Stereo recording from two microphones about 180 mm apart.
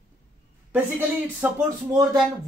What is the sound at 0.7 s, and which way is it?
Speech, 10° right (ahead or behind).